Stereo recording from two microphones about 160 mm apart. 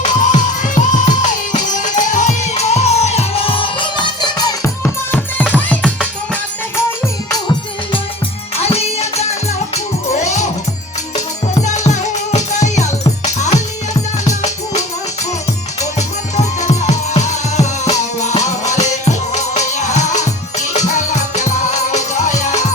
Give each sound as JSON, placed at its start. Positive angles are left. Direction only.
{"t": 0.0, "sound": "music", "side_deg": 50}
{"t": 4.8, "sound": "music", "side_deg": 10}
{"t": 7.0, "sound": "music", "side_deg": 20}
{"t": 8.5, "sound": "music", "side_deg": 40}
{"t": 11.6, "sound": "music", "side_deg": 45}